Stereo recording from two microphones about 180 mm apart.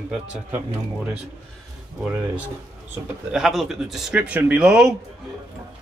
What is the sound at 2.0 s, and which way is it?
Speech, 5° right (ahead or behind).